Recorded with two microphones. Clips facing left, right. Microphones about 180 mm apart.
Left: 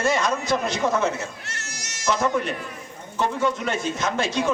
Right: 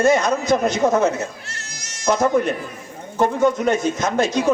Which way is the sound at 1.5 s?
70° left (ahead or behind).